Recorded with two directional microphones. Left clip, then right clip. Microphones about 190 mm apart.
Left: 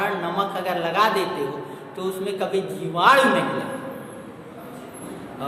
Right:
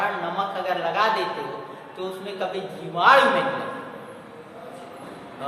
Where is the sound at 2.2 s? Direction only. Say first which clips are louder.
Left 5 dB; 25° left (ahead or behind).